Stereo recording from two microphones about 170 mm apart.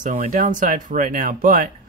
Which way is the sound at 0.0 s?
50° right (ahead or behind).